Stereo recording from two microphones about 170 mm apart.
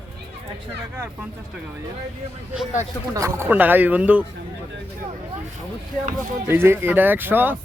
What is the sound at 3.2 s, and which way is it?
Speech, 15° right (ahead or behind).